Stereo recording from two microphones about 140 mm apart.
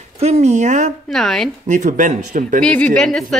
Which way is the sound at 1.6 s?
60° right (ahead or behind).